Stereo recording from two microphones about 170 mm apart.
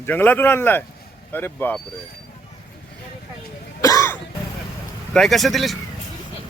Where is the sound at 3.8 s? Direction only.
20° left (ahead or behind).